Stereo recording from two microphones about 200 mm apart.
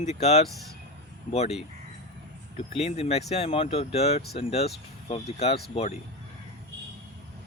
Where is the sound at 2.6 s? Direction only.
30° left (ahead or behind).